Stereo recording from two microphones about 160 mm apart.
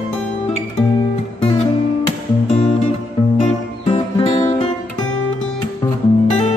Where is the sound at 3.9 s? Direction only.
35° left (ahead or behind).